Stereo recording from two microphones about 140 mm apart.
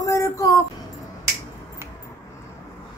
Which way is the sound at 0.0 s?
25° left (ahead or behind).